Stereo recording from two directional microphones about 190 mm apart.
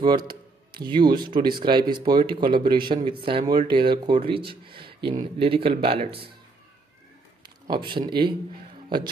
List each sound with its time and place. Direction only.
0.0 s speech: 25° right (ahead or behind)
7.4 s a man's voice: 25° right (ahead or behind)